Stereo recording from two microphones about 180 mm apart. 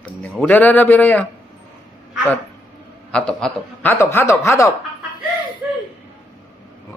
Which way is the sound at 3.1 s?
5° left (ahead or behind).